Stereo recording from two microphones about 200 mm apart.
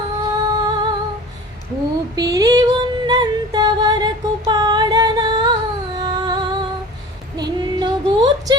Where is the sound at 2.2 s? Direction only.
20° right (ahead or behind).